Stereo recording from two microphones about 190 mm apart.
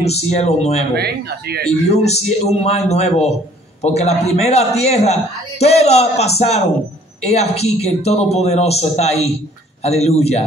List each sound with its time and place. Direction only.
0.0 s speech: 35° left (ahead or behind)
0.9 s speech: 55° right (ahead or behind)
1.7 s speech: 35° left (ahead or behind)